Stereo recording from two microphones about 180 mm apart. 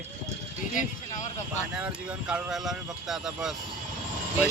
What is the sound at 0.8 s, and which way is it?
Speech, 45° left (ahead or behind).